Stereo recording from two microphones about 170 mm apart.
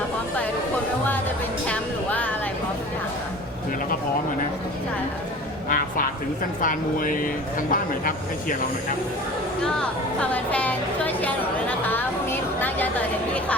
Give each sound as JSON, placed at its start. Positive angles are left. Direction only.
{"t": 1.6, "sound": "music", "side_deg": 10}
{"t": 5.6, "sound": "a man's voice", "side_deg": 55}
{"t": 9.6, "sound": "a woman's voice", "side_deg": 5}
{"t": 11.9, "sound": "a sound", "side_deg": 10}